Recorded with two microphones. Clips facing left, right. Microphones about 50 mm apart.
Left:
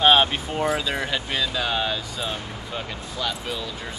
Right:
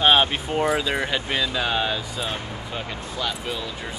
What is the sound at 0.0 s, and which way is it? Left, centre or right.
Speech, centre.